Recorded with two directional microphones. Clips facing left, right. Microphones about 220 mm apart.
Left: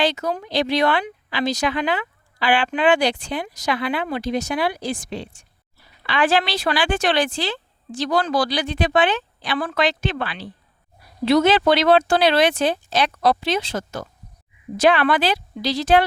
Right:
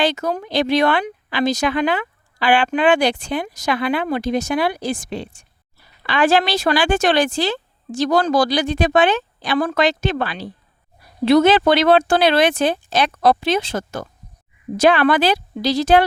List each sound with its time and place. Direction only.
0.0 s speech: 50° right (ahead or behind)
14.8 s speech: 40° right (ahead or behind)